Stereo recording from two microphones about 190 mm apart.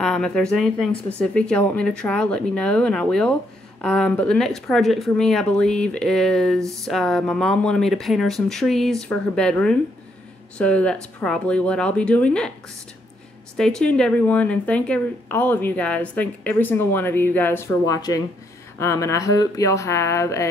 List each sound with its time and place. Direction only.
0.0 s speech: 5° left (ahead or behind)
13.6 s a woman's voice: 5° left (ahead or behind)